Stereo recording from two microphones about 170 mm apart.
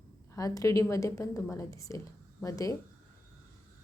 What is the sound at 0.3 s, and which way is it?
Speech, 20° left (ahead or behind).